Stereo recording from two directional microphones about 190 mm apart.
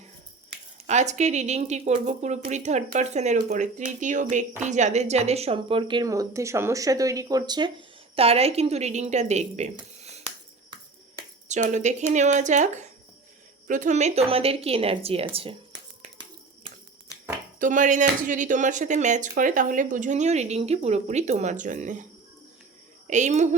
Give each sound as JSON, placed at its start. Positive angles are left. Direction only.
{"t": 0.9, "sound": "speech", "side_deg": -35}
{"t": 10.0, "sound": "a sound", "side_deg": -35}
{"t": 11.4, "sound": "speech", "side_deg": -40}
{"t": 17.6, "sound": "speech", "side_deg": -45}
{"t": 23.0, "sound": "speech", "side_deg": -40}